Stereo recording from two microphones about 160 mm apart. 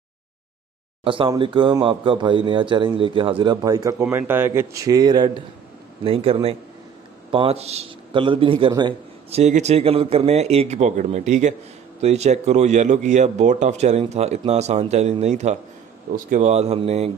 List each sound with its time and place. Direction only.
1.0 s a man's voice: 30° right (ahead or behind)
4.0 s speech: 15° right (ahead or behind)
6.0 s a man's voice: 35° right (ahead or behind)
9.4 s a man's voice: 45° right (ahead or behind)